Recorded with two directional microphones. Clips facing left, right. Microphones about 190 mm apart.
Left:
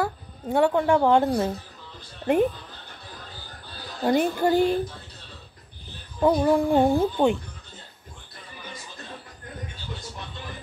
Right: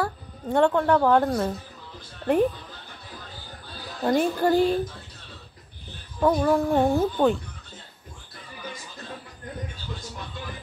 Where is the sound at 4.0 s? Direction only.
10° left (ahead or behind).